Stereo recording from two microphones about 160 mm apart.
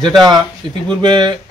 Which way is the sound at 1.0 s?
25° right (ahead or behind).